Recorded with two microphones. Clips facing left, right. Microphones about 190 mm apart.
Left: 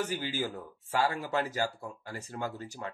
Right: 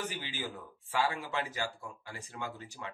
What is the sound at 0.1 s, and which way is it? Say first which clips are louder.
Speech: left 7 dB; 40° left (ahead or behind).